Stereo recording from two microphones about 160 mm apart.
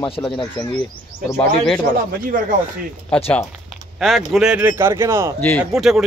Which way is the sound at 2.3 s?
55° right (ahead or behind).